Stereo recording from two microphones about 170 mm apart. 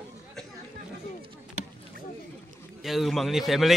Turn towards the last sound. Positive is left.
turn(degrees=0)  # may be behind; listen again after turning